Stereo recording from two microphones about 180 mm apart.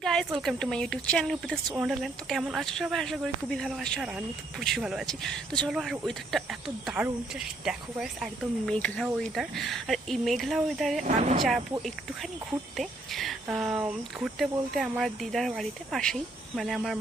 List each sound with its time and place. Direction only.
0.0 s speech: 5° left (ahead or behind)
11.0 s speech: 40° right (ahead or behind)
12.7 s speech: centre (ahead or behind)